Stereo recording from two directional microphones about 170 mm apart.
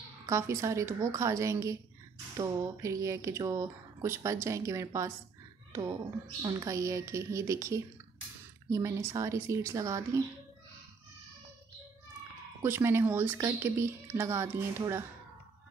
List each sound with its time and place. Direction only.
0.3 s speech: 15° right (ahead or behind)
12.6 s speech: 15° right (ahead or behind)